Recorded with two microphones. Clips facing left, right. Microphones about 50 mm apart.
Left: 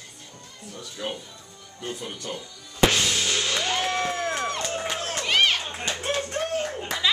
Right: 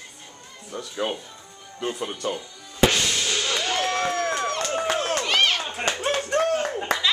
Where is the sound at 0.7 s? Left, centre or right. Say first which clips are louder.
Right 7 dB; right.